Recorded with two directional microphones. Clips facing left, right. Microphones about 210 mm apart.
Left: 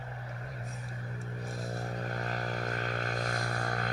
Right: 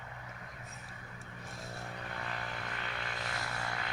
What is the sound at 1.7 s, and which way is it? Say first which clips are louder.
Vehicle: left 6 dB; 40° left (ahead or behind).